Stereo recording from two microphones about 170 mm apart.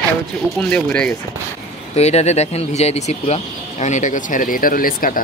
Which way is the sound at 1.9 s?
40° left (ahead or behind).